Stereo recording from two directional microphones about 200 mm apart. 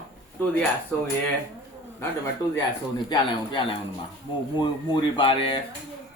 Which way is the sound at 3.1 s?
25° left (ahead or behind).